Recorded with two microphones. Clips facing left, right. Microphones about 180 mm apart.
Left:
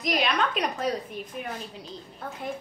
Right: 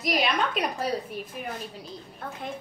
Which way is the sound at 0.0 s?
5° right (ahead or behind).